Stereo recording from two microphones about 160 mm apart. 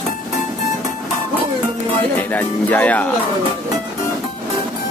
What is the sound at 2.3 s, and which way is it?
Speech, 10° left (ahead or behind).